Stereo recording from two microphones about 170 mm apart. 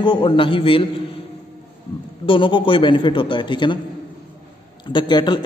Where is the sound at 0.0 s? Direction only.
30° left (ahead or behind).